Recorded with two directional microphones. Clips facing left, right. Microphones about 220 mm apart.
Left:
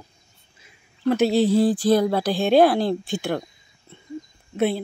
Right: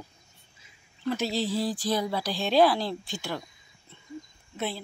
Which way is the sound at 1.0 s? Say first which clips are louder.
Left 10 dB; 60° left (ahead or behind).